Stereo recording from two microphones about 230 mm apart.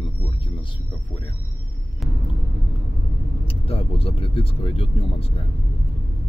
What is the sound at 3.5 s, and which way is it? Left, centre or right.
Speech, left.